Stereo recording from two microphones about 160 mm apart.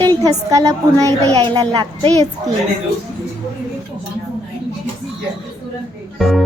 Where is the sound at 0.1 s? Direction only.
20° right (ahead or behind).